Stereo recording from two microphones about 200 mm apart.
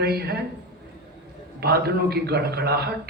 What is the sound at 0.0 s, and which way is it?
Speech, 50° right (ahead or behind).